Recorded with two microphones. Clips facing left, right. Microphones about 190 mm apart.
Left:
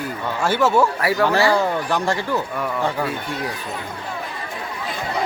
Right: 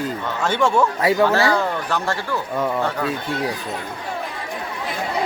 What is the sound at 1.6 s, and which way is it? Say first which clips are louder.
Speech: left 2 dB; 15° left (ahead or behind).